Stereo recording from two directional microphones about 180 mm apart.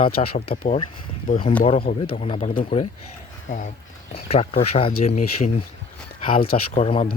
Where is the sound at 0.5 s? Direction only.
50° left (ahead or behind).